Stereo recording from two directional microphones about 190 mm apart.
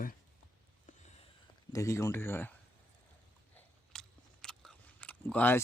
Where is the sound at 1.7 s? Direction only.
15° left (ahead or behind).